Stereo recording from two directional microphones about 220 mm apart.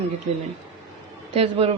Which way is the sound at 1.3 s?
25° right (ahead or behind).